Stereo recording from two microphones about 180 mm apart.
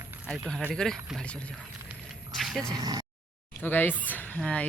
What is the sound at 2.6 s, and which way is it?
Speech, 20° right (ahead or behind).